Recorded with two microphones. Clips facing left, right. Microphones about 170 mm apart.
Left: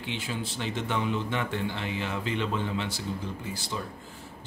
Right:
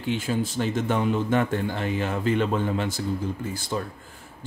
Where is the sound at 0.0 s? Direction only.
45° right (ahead or behind).